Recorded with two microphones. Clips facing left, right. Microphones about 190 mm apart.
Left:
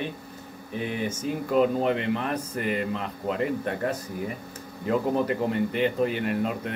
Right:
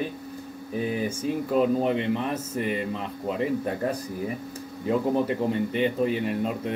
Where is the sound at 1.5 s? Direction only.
Centre (ahead or behind).